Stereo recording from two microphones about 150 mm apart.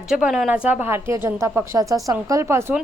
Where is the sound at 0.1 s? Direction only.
Centre (ahead or behind).